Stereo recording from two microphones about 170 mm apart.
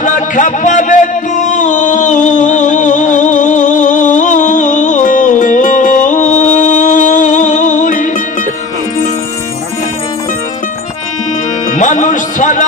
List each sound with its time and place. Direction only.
0.0 s music: 50° left (ahead or behind)
11.7 s music: 45° left (ahead or behind)